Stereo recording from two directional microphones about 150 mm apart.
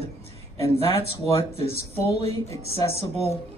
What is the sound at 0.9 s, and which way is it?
Speech, 35° left (ahead or behind).